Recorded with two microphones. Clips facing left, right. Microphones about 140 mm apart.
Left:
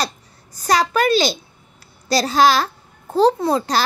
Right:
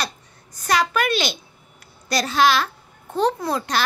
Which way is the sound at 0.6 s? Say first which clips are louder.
Left 3 dB; 35° left (ahead or behind).